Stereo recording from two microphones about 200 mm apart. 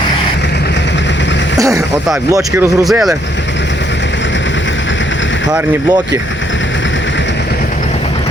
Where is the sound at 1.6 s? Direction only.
15° right (ahead or behind).